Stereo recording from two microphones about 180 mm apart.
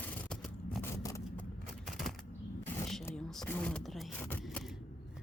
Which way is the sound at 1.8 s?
Centre (ahead or behind).